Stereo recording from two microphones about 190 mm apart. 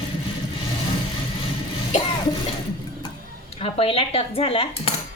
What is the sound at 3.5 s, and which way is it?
Speech, 30° left (ahead or behind).